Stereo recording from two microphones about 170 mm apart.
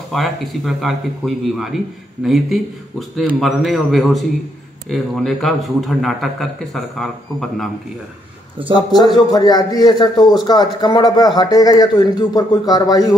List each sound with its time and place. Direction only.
0.1 s a man's voice: centre (ahead or behind)
8.7 s a man's voice: 25° left (ahead or behind)